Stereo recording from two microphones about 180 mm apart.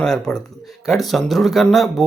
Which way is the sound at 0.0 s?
5° left (ahead or behind).